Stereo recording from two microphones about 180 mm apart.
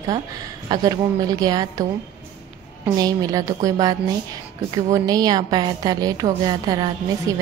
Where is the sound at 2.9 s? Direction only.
20° right (ahead or behind).